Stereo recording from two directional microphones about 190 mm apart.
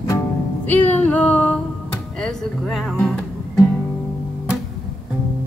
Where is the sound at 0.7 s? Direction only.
10° left (ahead or behind).